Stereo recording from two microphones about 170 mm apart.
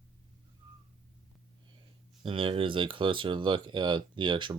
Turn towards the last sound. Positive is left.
turn(degrees=-30)  # may be behind; listen again after turning